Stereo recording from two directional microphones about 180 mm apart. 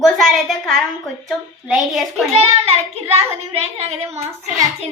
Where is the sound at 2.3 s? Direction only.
35° right (ahead or behind).